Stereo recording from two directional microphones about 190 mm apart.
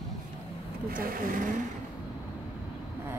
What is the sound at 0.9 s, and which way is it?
Speech, 50° right (ahead or behind).